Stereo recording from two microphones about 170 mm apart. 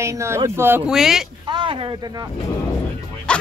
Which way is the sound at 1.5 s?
30° right (ahead or behind).